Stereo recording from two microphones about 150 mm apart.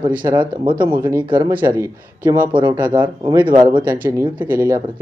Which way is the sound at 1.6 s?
20° right (ahead or behind).